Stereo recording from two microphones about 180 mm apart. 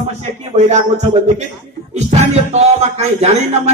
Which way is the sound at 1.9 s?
40° right (ahead or behind).